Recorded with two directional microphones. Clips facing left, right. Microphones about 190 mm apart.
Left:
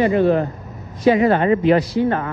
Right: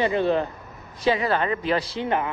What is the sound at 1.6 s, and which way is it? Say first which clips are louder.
Speech: left 9 dB; 30° right (ahead or behind).